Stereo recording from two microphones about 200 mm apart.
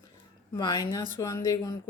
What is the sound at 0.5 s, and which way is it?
Speech, 20° left (ahead or behind).